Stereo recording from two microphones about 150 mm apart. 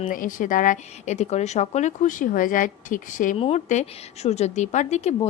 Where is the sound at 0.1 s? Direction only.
60° left (ahead or behind).